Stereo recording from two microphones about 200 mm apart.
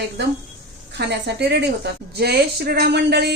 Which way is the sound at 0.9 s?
55° right (ahead or behind).